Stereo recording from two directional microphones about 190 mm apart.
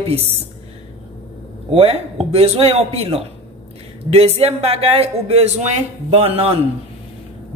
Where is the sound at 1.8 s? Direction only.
30° right (ahead or behind).